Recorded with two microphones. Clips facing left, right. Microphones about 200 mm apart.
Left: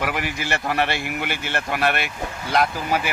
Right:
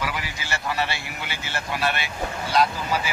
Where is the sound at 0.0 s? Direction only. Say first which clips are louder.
Left 5 dB; 50° left (ahead or behind).